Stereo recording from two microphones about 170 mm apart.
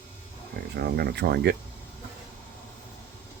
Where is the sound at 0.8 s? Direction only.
70° right (ahead or behind).